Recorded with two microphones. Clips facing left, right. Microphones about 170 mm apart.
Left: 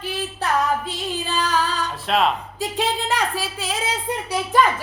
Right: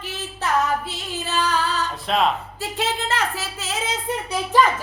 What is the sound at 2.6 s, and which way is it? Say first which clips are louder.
Speech: left 3 dB; 15° left (ahead or behind).